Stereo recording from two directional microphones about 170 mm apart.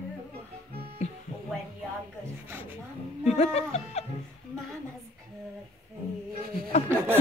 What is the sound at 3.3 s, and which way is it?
Music, 40° left (ahead or behind).